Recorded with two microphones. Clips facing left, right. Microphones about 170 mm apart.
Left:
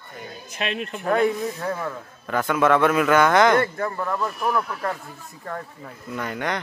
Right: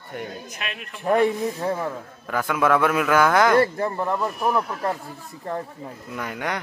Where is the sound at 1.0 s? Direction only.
25° right (ahead or behind).